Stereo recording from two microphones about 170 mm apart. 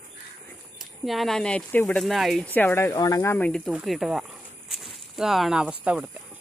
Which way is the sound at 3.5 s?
5° left (ahead or behind).